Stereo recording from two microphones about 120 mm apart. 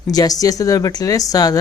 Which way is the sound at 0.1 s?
30° left (ahead or behind).